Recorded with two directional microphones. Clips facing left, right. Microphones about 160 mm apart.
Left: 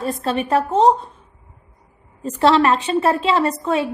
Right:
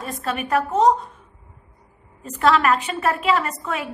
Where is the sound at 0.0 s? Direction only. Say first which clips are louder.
Left 5 dB; 30° left (ahead or behind).